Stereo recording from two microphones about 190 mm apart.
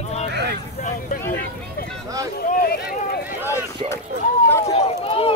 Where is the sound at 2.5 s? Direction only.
50° left (ahead or behind).